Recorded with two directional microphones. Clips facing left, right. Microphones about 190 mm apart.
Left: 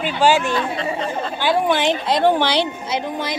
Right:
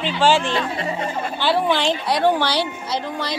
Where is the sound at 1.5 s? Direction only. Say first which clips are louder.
Left 2 dB; 15° left (ahead or behind).